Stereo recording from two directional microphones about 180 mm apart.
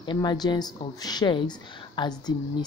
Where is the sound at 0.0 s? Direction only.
25° left (ahead or behind).